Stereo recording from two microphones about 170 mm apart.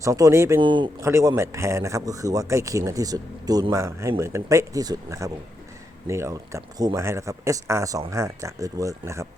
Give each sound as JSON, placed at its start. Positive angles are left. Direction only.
{"t": 0.0, "sound": "a man's voice", "side_deg": -20}
{"t": 0.6, "sound": "speech", "side_deg": -30}
{"t": 1.0, "sound": "a man's voice", "side_deg": -15}